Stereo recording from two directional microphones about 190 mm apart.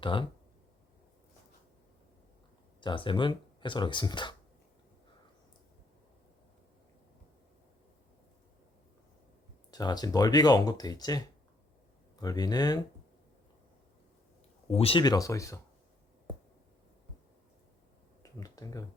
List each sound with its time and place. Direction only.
0.0 s speech: 25° left (ahead or behind)
2.8 s speech: 25° left (ahead or behind)
9.7 s speech: 20° left (ahead or behind)
12.2 s speech: 20° left (ahead or behind)
14.7 s speech: 30° left (ahead or behind)
18.2 s a sound: 20° left (ahead or behind)